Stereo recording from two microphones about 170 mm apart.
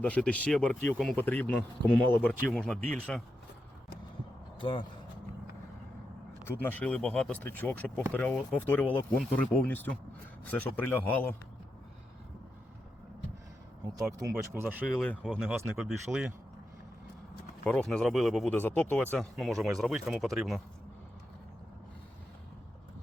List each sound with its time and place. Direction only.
0.0 s speech: 5° left (ahead or behind)
4.6 s speech: 30° left (ahead or behind)
6.4 s speech: 10° left (ahead or behind)
14.5 s speech: 10° right (ahead or behind)
15.0 s speech: 5° left (ahead or behind)
17.6 s speech: 5° left (ahead or behind)